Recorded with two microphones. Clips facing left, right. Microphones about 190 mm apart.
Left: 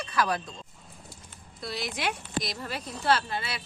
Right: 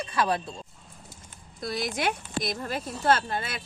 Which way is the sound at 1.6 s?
45° right (ahead or behind).